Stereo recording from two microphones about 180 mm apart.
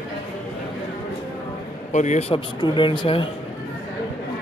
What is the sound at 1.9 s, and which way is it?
Speech, 40° left (ahead or behind).